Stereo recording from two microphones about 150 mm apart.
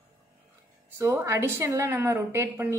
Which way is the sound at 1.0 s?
20° right (ahead or behind).